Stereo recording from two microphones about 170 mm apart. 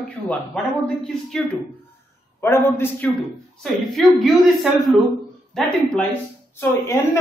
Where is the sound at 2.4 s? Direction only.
15° left (ahead or behind).